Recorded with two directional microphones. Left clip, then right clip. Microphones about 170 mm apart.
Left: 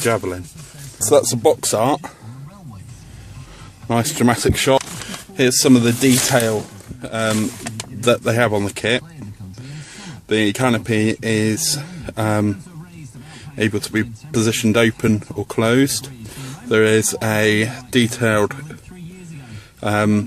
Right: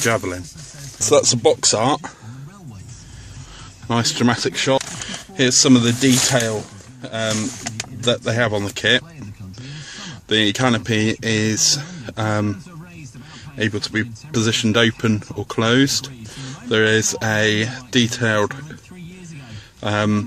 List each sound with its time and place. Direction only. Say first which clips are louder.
0.0 s speech: even; 5° left (ahead or behind)
3.8 s speech: left 1 dB; 15° left (ahead or behind)
4.7 s a sound: left 2 dB; centre (ahead or behind)
5.3 s speech: even; 15° left (ahead or behind)
7.0 s speech: left 2 dB; 25° left (ahead or behind)
13.6 s speech: left 2 dB; 25° left (ahead or behind)
19.8 s speech: left 2 dB; 15° left (ahead or behind)